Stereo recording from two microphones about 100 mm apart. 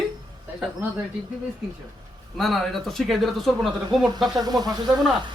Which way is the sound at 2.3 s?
Centre (ahead or behind).